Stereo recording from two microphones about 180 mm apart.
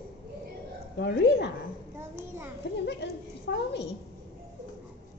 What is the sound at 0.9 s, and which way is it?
Speech, 65° left (ahead or behind).